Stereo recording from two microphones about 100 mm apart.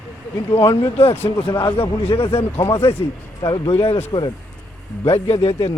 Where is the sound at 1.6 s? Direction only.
70° left (ahead or behind).